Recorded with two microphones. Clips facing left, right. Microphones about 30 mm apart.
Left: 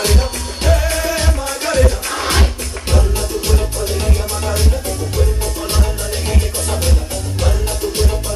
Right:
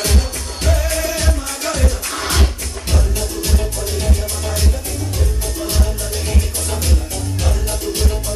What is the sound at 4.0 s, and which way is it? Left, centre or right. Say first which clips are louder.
Music: left 2 dB; left.